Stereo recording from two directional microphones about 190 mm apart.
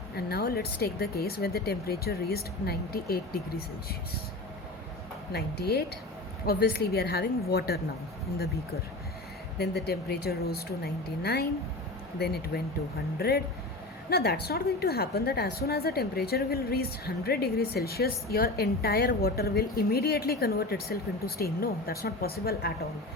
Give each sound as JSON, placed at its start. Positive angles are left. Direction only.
{"t": 0.2, "sound": "a woman's voice", "side_deg": 55}
{"t": 5.3, "sound": "a woman's voice", "side_deg": 55}
{"t": 9.6, "sound": "a woman's voice", "side_deg": 55}